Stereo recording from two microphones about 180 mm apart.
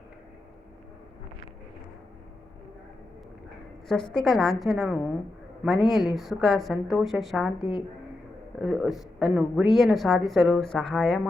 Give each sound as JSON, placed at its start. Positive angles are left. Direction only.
{"t": 3.8, "sound": "speech", "side_deg": 5}
{"t": 8.6, "sound": "speech", "side_deg": -5}